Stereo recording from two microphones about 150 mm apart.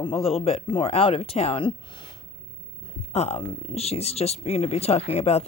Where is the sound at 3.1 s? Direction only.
45° left (ahead or behind).